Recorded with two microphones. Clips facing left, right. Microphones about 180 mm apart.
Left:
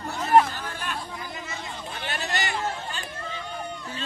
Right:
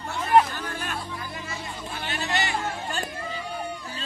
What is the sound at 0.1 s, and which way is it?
Chatter, 45° left (ahead or behind).